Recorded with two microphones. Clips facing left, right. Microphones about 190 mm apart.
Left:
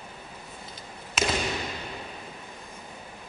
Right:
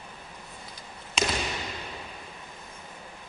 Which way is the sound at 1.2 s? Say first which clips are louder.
Left 1 dB; 5° left (ahead or behind).